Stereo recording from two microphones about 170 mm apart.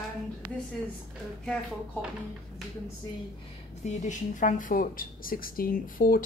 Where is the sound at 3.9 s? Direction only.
45° left (ahead or behind).